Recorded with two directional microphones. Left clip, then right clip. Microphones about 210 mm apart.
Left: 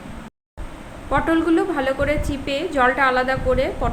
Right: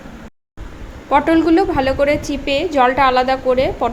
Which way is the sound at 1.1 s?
25° right (ahead or behind).